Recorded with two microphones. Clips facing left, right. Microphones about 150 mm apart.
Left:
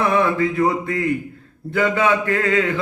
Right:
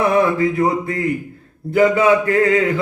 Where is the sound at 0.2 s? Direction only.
25° right (ahead or behind).